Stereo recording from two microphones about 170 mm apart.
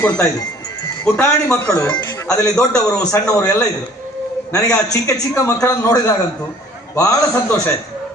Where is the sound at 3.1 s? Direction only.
20° left (ahead or behind).